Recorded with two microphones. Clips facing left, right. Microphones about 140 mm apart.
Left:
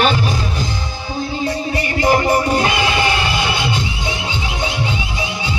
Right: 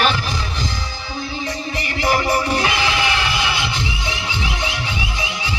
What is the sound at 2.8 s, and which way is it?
Music, 45° left (ahead or behind).